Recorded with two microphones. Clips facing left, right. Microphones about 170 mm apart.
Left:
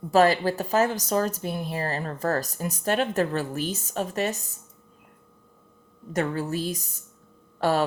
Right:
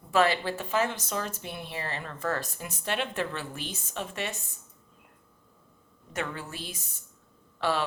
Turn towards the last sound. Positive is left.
turn(degrees=45)  # may be behind; listen again after turning